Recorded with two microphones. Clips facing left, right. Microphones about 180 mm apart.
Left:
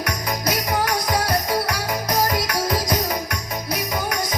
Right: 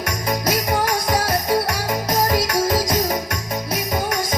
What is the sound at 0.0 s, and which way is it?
Music, 25° right (ahead or behind).